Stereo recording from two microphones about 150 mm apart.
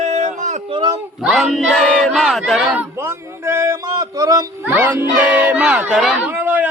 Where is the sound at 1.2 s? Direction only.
Centre (ahead or behind).